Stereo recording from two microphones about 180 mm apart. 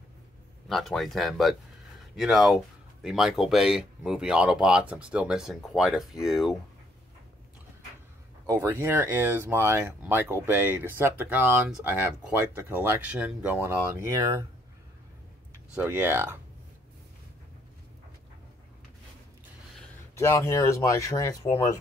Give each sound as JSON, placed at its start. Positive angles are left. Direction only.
{"t": 0.7, "sound": "speech", "side_deg": 0}
{"t": 8.5, "sound": "speech", "side_deg": -15}
{"t": 15.7, "sound": "speech", "side_deg": -10}
{"t": 20.2, "sound": "speech", "side_deg": 15}